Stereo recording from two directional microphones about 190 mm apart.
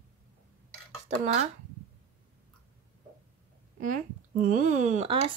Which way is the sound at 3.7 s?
45° right (ahead or behind).